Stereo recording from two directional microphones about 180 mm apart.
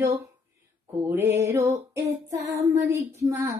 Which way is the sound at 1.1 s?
15° right (ahead or behind).